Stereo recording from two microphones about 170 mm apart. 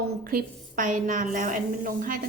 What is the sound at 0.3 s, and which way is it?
A woman's voice, 55° right (ahead or behind).